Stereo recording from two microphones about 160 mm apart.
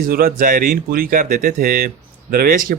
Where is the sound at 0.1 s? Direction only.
65° right (ahead or behind).